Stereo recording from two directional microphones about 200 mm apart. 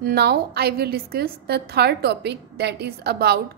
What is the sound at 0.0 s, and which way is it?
A woman's voice, 50° right (ahead or behind).